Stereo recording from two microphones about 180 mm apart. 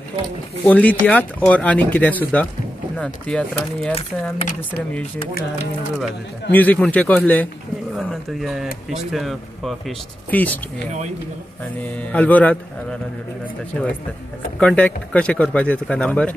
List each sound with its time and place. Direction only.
0.7 s speech: 10° left (ahead or behind)
3.9 s speech: 35° left (ahead or behind)
6.5 s speech: 10° left (ahead or behind)
11.8 s speech: 10° left (ahead or behind)
14.6 s speech: 5° left (ahead or behind)